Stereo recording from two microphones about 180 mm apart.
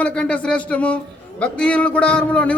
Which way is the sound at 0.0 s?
5° left (ahead or behind).